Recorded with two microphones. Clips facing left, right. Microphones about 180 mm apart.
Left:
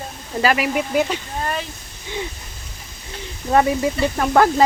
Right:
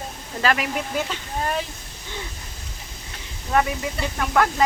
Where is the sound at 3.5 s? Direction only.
30° left (ahead or behind).